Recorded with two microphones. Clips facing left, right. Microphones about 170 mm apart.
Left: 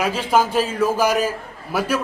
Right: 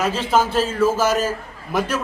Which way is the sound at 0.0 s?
10° left (ahead or behind).